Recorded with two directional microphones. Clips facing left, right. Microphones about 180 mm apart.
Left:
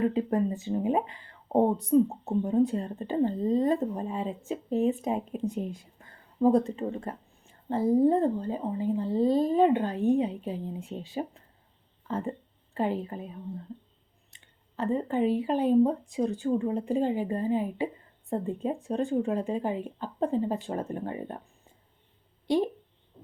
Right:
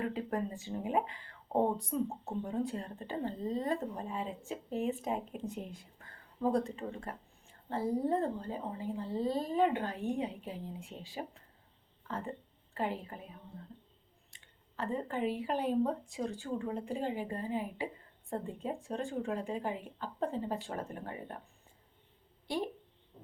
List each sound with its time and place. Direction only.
0.1 s speech: 25° left (ahead or behind)
14.8 s speech: 20° left (ahead or behind)